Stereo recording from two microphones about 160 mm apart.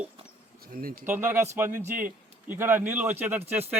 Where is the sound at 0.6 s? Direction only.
65° right (ahead or behind).